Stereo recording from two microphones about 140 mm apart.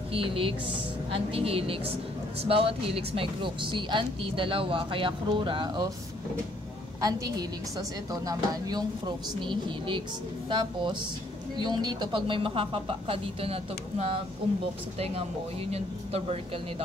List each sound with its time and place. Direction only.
0.1 s speech: 40° right (ahead or behind)
7.0 s a woman's voice: 25° right (ahead or behind); by 14.2 s 45° right (ahead or behind)
15.7 s speech: 45° right (ahead or behind)